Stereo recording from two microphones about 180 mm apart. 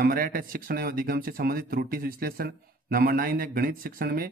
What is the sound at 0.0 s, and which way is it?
Speech, 55° right (ahead or behind).